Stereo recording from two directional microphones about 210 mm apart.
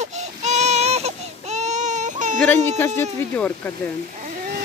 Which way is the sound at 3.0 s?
10° left (ahead or behind).